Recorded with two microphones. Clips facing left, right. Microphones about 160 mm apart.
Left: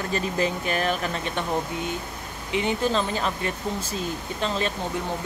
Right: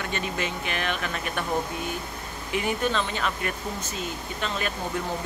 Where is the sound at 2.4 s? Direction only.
25° left (ahead or behind).